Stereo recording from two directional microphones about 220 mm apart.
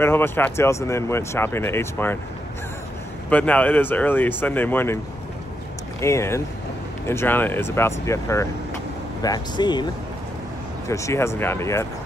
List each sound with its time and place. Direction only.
0.0 s speech: 10° left (ahead or behind)
3.3 s speech: 5° left (ahead or behind)
5.9 s speech: 15° left (ahead or behind)
10.9 s speech: 15° left (ahead or behind)